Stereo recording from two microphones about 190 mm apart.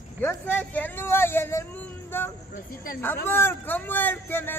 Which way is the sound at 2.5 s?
50° left (ahead or behind).